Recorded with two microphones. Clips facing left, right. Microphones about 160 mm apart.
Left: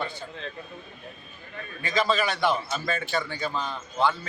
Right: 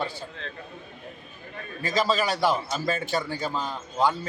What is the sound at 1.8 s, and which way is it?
A man's voice, 40° right (ahead or behind).